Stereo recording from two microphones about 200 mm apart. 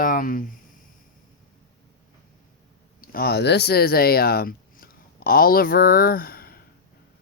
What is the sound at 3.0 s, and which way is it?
Speech, 50° left (ahead or behind).